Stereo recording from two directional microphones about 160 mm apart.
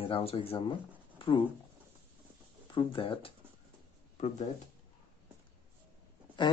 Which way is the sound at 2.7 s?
30° left (ahead or behind).